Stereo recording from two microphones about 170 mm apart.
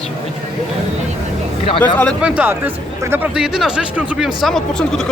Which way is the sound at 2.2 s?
10° right (ahead or behind).